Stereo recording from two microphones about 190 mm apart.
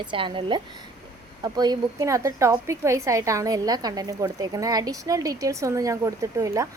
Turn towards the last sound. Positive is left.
turn(degrees=-15)  # may be behind; listen again after turning